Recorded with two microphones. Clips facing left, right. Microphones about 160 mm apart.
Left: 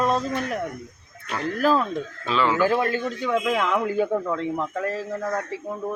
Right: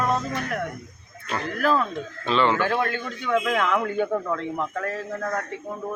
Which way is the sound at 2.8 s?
30° left (ahead or behind).